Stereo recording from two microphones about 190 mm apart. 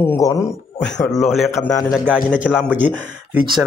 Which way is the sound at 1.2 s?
Centre (ahead or behind).